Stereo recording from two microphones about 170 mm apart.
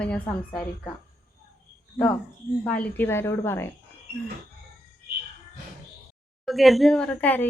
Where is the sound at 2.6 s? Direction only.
10° left (ahead or behind).